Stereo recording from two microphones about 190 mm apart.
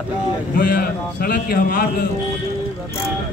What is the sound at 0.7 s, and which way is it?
A man's voice, 55° left (ahead or behind).